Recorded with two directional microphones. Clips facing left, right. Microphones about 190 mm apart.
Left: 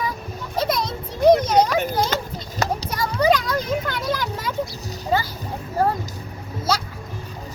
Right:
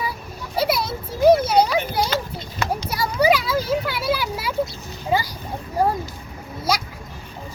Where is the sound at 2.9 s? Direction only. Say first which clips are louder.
Right 1 dB; 10° right (ahead or behind).